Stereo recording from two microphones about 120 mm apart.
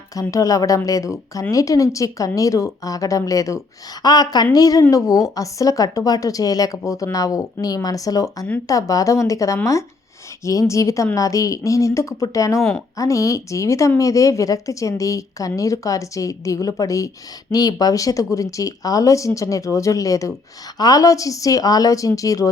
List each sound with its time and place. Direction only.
0.1 s a woman's voice: 30° left (ahead or behind)